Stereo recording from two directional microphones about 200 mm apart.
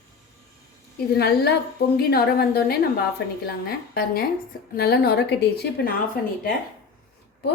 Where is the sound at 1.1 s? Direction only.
55° left (ahead or behind).